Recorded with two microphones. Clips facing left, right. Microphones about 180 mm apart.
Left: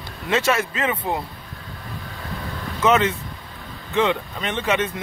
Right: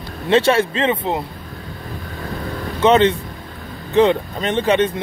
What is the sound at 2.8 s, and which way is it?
Speech, 30° right (ahead or behind).